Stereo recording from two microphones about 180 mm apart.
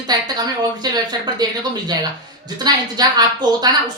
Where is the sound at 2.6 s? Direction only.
20° right (ahead or behind).